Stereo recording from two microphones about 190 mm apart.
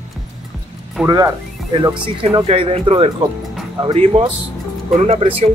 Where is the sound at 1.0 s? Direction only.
15° right (ahead or behind).